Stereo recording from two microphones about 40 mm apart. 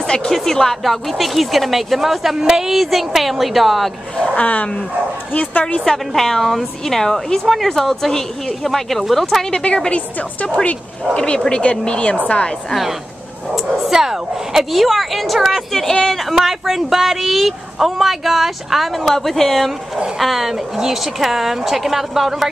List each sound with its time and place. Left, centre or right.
0.0 s a sound: centre
0.3 s speech: centre
4.4 s a woman's voice: left
5.9 s speech: centre
9.8 s a woman's voice: left
11.1 s a woman's voice: left
13.8 s speech: centre
15.7 s speech: centre
16.3 s speech: centre
19.1 s speech: centre
20.2 s a woman's voice: centre